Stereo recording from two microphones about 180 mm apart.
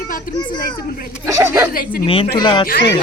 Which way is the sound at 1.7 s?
55° left (ahead or behind).